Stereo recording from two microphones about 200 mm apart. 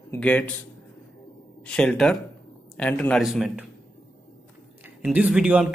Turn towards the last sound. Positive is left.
turn(degrees=-5)  # may be behind; listen again after turning